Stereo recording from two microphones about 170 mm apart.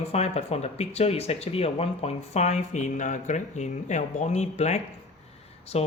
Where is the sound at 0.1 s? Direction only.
40° left (ahead or behind).